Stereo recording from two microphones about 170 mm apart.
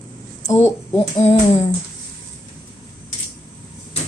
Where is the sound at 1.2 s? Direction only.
35° left (ahead or behind).